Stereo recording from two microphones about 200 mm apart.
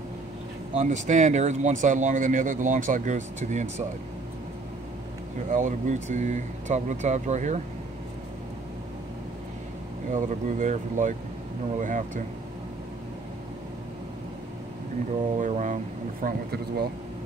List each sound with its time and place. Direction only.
0.7 s speech: 35° right (ahead or behind)
5.5 s speech: 40° right (ahead or behind)
10.1 s speech: 40° right (ahead or behind)
15.3 s speech: 40° right (ahead or behind)